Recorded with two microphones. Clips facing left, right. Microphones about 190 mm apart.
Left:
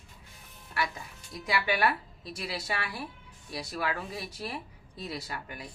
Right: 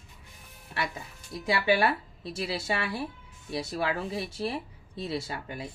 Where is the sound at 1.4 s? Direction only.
25° right (ahead or behind).